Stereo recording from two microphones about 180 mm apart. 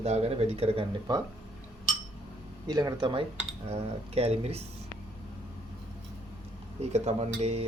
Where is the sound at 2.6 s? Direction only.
20° right (ahead or behind).